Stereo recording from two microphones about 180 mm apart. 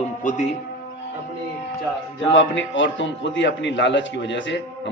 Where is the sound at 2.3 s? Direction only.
90° left.